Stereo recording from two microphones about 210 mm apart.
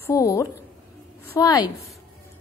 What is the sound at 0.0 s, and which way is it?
A woman's voice, 15° left (ahead or behind).